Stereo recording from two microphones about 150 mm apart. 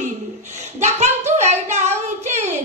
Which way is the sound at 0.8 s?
50° right (ahead or behind).